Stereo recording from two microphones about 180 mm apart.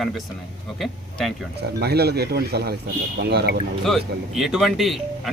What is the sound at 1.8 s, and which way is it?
Speech, 65° right (ahead or behind).